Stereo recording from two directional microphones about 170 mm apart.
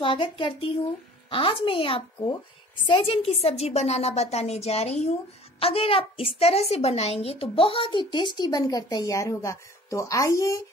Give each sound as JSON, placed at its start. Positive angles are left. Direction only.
{"t": 0.0, "sound": "a woman's voice", "side_deg": 30}